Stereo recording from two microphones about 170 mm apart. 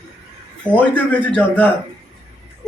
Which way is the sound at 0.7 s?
10° left (ahead or behind).